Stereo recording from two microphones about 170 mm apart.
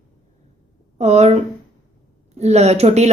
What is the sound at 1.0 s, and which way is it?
A woman's voice, 40° right (ahead or behind).